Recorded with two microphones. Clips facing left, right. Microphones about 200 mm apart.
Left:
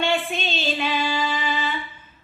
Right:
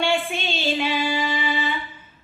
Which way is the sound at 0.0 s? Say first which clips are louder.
Even; 10° right (ahead or behind).